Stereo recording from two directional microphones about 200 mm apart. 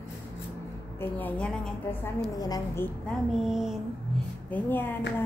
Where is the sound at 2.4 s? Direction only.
20° left (ahead or behind).